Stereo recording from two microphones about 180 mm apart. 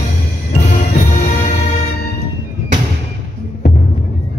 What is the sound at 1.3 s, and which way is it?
Music, 40° left (ahead or behind).